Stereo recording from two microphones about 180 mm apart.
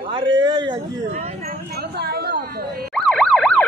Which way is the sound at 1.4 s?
60° right (ahead or behind).